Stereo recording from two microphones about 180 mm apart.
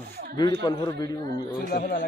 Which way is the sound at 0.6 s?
25° left (ahead or behind).